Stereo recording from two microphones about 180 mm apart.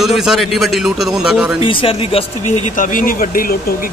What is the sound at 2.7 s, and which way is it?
Speech, 50° left (ahead or behind).